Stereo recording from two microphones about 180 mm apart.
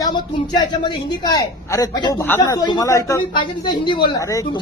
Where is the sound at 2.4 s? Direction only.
25° left (ahead or behind).